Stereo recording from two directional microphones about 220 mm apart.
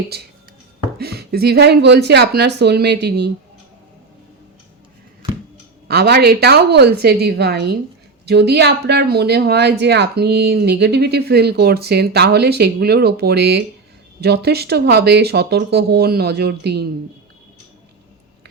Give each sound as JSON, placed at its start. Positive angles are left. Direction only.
{"t": 0.9, "sound": "speech", "side_deg": -45}
{"t": 5.9, "sound": "speech", "side_deg": -45}